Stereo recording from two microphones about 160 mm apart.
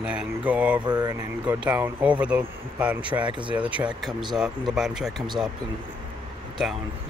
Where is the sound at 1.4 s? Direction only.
10° right (ahead or behind).